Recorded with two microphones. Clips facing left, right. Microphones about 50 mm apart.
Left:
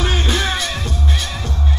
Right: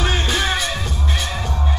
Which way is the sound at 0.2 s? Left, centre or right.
Right.